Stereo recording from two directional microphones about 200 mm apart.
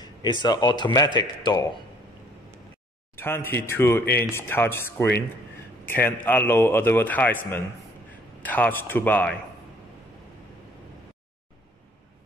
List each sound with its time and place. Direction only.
0.0 s speech: 20° left (ahead or behind)
3.2 s a man's voice: 10° left (ahead or behind)
8.5 s a man's voice: 10° left (ahead or behind)